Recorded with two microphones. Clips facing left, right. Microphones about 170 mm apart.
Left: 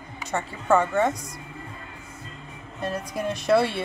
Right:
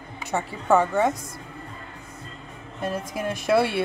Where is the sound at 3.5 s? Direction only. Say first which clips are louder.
Even; 5° right (ahead or behind).